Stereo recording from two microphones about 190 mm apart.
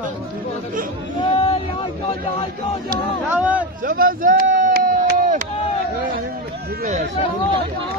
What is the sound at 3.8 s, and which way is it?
Speech, 50° right (ahead or behind).